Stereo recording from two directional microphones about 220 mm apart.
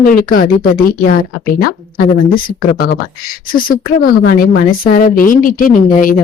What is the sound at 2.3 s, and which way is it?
Speech, 40° left (ahead or behind).